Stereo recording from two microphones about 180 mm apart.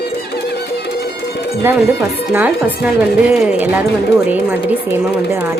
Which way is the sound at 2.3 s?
10° right (ahead or behind).